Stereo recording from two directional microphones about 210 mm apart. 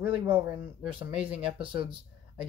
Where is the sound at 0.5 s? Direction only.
25° right (ahead or behind).